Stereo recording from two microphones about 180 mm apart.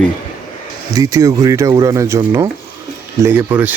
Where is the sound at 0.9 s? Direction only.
20° right (ahead or behind).